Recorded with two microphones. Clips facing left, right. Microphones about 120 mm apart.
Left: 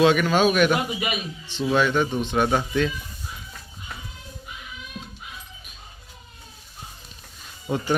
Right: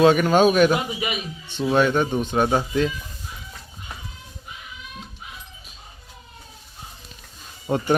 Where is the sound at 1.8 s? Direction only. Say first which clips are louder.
Right 3 dB; 40° right (ahead or behind).